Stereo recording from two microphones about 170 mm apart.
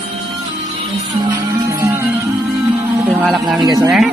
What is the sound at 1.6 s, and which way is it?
Music, 15° right (ahead or behind).